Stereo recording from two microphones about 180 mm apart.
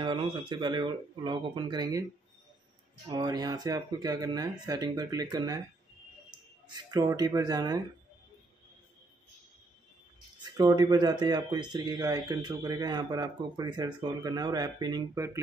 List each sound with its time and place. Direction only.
0.0 s speech: 25° right (ahead or behind)
3.1 s speech: 20° right (ahead or behind)
6.7 s speech: 20° right (ahead or behind)
10.4 s speech: 20° right (ahead or behind)